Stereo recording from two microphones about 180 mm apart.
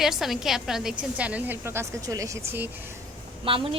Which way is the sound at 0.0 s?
Centre (ahead or behind).